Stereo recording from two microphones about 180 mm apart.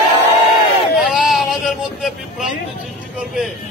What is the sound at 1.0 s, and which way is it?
Speech, centre (ahead or behind).